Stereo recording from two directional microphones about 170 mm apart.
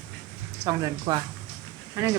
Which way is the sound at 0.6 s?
20° right (ahead or behind).